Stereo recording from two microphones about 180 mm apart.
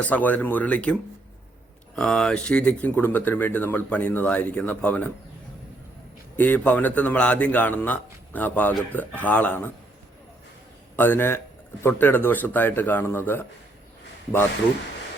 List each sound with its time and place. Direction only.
0.0 s a man's voice: 10° left (ahead or behind)
2.0 s a man's voice: 5° left (ahead or behind)
6.3 s a man's voice: 10° left (ahead or behind)
10.9 s a man's voice: 10° left (ahead or behind)